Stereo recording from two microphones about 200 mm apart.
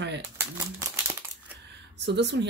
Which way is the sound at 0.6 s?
15° right (ahead or behind).